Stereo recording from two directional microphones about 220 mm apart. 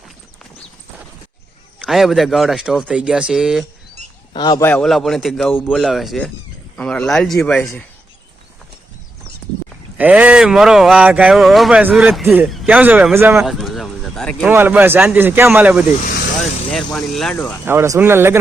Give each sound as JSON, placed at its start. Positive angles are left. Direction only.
{"t": 1.8, "sound": "speech", "side_deg": 0}
{"t": 4.4, "sound": "a man's voice", "side_deg": 20}
{"t": 4.7, "sound": "speech", "side_deg": 0}
{"t": 10.0, "sound": "speech", "side_deg": -5}
{"t": 14.4, "sound": "a man's voice", "side_deg": -10}
{"t": 17.7, "sound": "a man's voice", "side_deg": -10}